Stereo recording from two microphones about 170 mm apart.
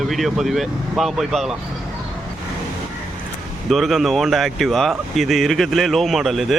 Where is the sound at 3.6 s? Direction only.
Centre (ahead or behind).